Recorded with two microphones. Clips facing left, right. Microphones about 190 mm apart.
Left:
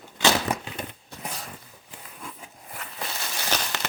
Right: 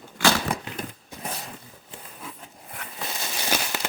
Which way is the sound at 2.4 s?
Centre (ahead or behind).